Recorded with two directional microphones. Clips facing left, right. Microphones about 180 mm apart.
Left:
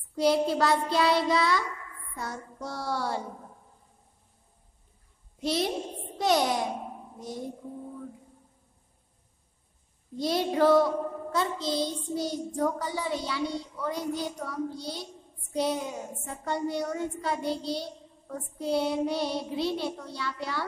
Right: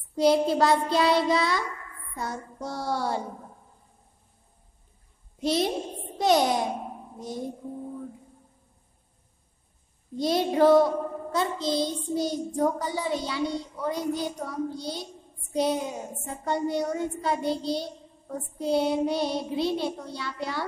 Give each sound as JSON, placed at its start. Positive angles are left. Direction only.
{"t": 0.1, "sound": "child singing", "side_deg": -20}
{"t": 5.4, "sound": "child singing", "side_deg": -20}
{"t": 10.1, "sound": "child singing", "side_deg": -20}